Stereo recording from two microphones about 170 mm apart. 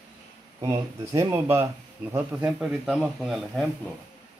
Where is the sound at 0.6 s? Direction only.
15° right (ahead or behind); by 3.7 s centre (ahead or behind).